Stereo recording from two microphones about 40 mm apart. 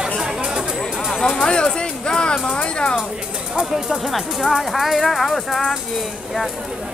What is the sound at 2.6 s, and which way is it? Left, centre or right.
Speech, left.